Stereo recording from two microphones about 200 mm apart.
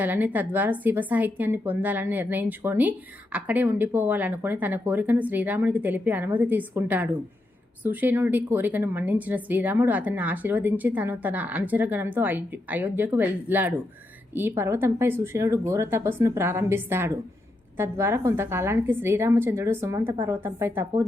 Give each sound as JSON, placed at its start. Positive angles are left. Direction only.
{"t": 0.0, "sound": "a woman's voice", "side_deg": -10}